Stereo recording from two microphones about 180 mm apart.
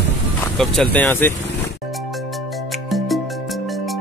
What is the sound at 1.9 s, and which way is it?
Music, centre (ahead or behind).